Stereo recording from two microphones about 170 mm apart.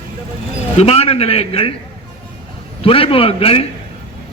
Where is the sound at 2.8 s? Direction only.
35° left (ahead or behind).